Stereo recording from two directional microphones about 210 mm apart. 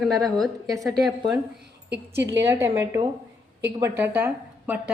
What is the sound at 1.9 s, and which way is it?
Speech, 55° right (ahead or behind).